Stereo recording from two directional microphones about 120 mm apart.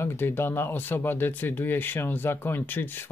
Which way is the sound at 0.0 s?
20° left (ahead or behind).